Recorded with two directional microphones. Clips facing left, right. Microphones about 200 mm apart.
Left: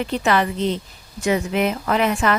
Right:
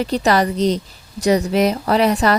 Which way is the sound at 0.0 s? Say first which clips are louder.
Right 3 dB; 40° right (ahead or behind).